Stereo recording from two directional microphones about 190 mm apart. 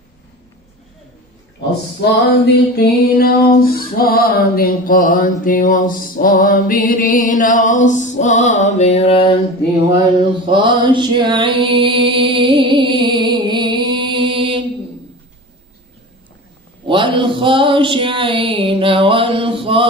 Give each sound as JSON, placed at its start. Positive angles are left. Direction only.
{"t": 2.4, "sound": "music", "side_deg": 55}
{"t": 9.8, "sound": "mantra", "side_deg": -20}
{"t": 16.8, "sound": "a sound", "side_deg": -25}